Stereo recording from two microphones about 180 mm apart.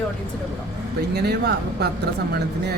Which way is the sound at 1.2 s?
65° right (ahead or behind).